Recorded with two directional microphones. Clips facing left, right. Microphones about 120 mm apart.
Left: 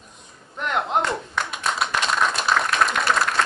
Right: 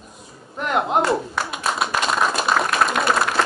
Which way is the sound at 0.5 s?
5° right (ahead or behind).